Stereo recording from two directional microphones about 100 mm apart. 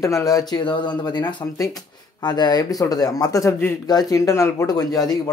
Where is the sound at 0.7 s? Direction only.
50° left (ahead or behind).